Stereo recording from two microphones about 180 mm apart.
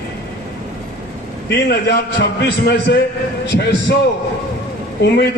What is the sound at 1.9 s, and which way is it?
A man's voice, 70° left (ahead or behind).